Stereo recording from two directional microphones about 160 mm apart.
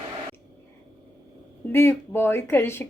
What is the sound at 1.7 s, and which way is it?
Speech, 15° left (ahead or behind).